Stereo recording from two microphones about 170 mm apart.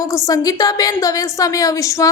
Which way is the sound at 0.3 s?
20° left (ahead or behind).